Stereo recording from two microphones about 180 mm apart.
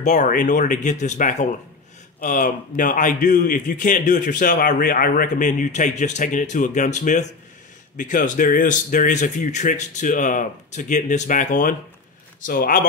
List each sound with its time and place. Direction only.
0.0 s a man's voice: 45° left (ahead or behind)